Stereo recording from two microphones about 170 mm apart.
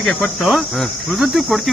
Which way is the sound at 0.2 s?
Centre (ahead or behind).